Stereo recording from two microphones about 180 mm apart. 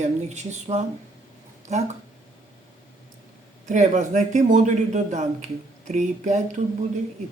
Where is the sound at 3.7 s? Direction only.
45° right (ahead or behind).